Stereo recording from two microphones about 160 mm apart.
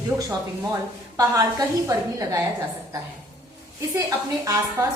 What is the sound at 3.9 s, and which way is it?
Speech, 20° right (ahead or behind).